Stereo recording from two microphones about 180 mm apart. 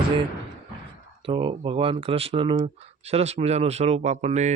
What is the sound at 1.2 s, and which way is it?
Speech, 25° right (ahead or behind).